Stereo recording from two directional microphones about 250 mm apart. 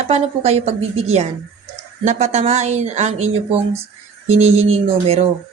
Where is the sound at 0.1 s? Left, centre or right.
Right.